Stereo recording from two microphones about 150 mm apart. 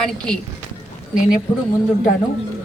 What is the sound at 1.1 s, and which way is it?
Speech, 65° left (ahead or behind).